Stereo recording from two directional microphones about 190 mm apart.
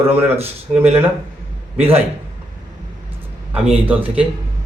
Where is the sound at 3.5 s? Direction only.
5° right (ahead or behind).